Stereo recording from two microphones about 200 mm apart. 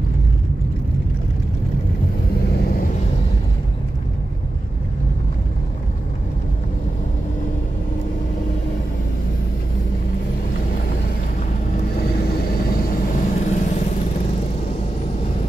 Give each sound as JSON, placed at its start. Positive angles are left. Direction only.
{"t": 12.8, "sound": "vehicle", "side_deg": 40}